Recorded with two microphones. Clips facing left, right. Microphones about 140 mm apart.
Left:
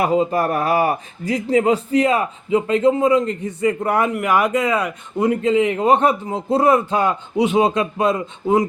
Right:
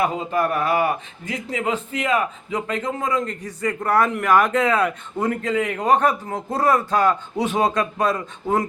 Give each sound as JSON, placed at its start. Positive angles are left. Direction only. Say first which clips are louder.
{"t": 0.0, "sound": "speech", "louder": "left 4 dB", "side_deg": 35}
{"t": 5.5, "sound": "a man's voice", "louder": "left 4 dB", "side_deg": 25}